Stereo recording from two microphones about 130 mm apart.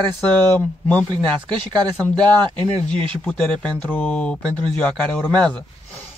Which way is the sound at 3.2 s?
5° left (ahead or behind).